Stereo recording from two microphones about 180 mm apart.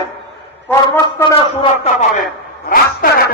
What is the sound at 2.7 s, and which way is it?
Speech, 55° left (ahead or behind).